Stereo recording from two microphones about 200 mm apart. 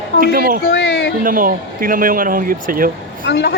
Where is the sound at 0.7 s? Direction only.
55° left (ahead or behind).